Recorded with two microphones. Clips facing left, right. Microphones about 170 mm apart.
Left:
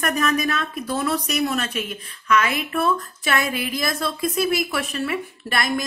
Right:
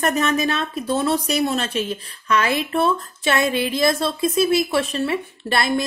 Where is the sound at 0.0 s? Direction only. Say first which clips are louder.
Right 2 dB; 30° right (ahead or behind).